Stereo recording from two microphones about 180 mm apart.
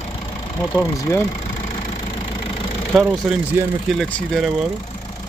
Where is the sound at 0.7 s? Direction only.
15° left (ahead or behind).